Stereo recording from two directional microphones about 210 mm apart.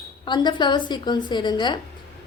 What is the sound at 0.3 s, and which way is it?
A woman's voice, 20° left (ahead or behind).